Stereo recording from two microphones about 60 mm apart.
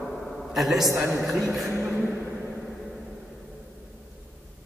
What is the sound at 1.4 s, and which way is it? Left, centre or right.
Speech, centre.